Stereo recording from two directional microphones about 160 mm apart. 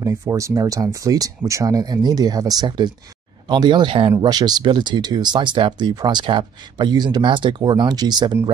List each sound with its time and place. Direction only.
0.0 s speech: 20° right (ahead or behind)